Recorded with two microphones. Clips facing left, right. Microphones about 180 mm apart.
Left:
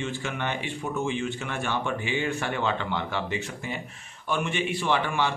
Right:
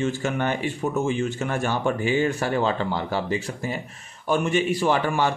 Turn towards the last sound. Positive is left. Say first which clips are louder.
# right 4 dB
turn(degrees=-40)  # may be behind; listen again after turning